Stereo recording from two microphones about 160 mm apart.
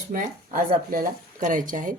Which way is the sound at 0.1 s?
60° right (ahead or behind).